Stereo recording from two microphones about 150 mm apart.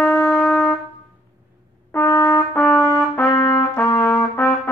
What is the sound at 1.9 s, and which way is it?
Trumpet, 15° left (ahead or behind).